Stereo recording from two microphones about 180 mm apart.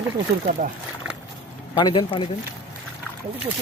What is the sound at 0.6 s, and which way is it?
Speech, 40° right (ahead or behind).